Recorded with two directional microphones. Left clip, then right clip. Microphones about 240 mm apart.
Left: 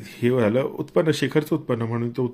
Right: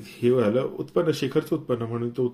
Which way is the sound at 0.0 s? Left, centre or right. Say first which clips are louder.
Left 1 dB; left.